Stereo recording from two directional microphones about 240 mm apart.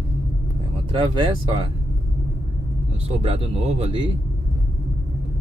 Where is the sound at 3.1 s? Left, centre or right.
Right.